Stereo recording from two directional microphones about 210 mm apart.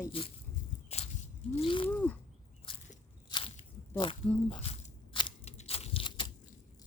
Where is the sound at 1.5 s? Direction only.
25° left (ahead or behind).